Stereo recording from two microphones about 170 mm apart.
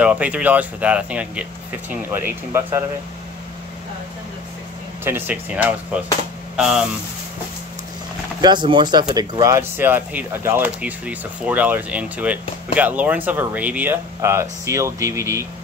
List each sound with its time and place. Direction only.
0.0 s speech: 10° right (ahead or behind)
5.0 s speech: 10° right (ahead or behind)
8.4 s speech: 25° right (ahead or behind)